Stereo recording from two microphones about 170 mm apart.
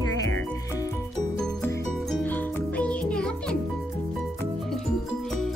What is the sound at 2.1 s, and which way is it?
Music, 10° left (ahead or behind).